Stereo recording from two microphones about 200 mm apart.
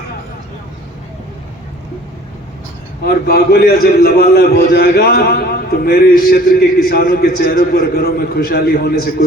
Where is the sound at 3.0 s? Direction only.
50° left (ahead or behind).